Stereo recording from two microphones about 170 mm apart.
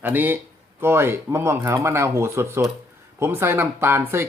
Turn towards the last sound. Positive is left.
turn(degrees=-15)  # may be behind; listen again after turning